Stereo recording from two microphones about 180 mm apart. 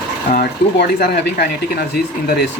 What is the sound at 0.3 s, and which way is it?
Speech, 60° left (ahead or behind).